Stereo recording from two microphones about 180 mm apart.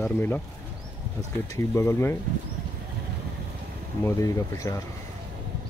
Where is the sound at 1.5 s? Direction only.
15° left (ahead or behind).